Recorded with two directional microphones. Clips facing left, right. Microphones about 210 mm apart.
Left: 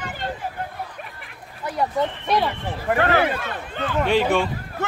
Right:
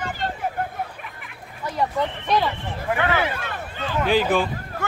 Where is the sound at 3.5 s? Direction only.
55° left (ahead or behind).